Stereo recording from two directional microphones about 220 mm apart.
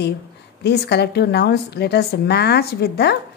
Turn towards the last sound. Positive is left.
turn(degrees=45)  # may be behind; listen again after turning